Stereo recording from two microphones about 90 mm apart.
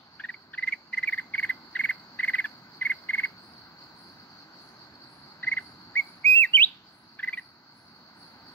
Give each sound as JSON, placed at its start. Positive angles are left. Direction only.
{"t": 0.2, "sound": "cricket", "side_deg": 15}
{"t": 5.4, "sound": "chirp", "side_deg": 20}
{"t": 7.2, "sound": "cricket", "side_deg": 20}